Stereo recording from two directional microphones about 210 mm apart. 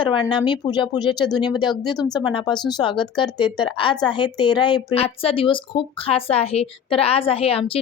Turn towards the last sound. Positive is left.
turn(degrees=25)  # may be behind; listen again after turning